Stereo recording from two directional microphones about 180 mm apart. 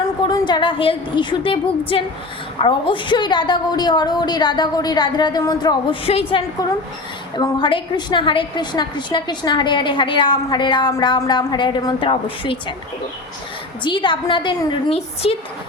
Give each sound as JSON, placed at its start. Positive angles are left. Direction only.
{"t": 0.0, "sound": "a woman's voice", "side_deg": 20}
{"t": 13.8, "sound": "a woman's voice", "side_deg": 25}